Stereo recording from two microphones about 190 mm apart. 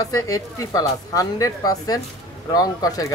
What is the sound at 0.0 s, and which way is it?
Speech, 20° left (ahead or behind).